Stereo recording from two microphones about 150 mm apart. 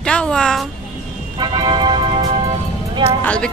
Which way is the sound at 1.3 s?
35° right (ahead or behind).